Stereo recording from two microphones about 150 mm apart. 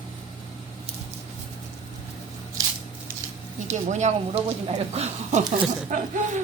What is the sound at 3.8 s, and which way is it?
Speech, 50° right (ahead or behind).